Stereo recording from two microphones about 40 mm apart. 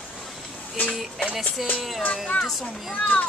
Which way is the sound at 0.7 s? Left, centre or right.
Left.